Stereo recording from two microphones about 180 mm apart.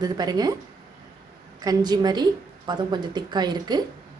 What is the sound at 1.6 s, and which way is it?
Speech, 20° right (ahead or behind).